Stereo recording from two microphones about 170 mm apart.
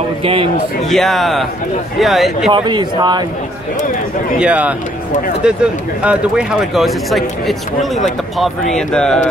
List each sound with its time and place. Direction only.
0.2 s a man's voice: 35° right (ahead or behind)
0.8 s speech: centre (ahead or behind)
2.5 s a man's voice: 25° right (ahead or behind)
4.4 s a man's voice: 10° right (ahead or behind)